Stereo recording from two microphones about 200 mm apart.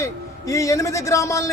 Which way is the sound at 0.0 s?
15° left (ahead or behind).